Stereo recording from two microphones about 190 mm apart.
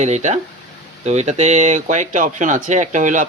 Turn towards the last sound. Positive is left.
turn(degrees=-40)  # may be behind; listen again after turning